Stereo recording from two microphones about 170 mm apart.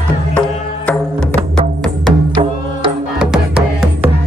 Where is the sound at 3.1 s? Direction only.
5° right (ahead or behind).